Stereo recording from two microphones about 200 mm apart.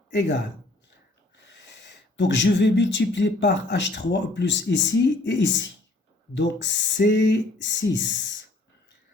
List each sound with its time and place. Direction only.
0.1 s speech: 60° left (ahead or behind)
1.5 s speech: 60° left (ahead or behind)